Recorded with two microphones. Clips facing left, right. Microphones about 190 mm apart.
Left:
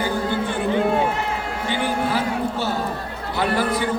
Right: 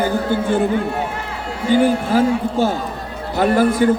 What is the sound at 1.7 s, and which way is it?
Speech, 45° right (ahead or behind).